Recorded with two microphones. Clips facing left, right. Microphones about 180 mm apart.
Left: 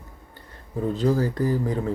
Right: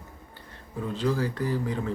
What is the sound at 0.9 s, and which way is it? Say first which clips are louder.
Speech: left 4 dB; 45° left (ahead or behind).